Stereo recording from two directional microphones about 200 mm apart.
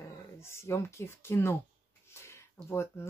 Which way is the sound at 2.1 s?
15° left (ahead or behind).